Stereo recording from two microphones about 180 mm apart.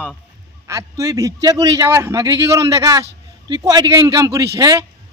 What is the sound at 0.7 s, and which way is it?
Speech, 15° right (ahead or behind).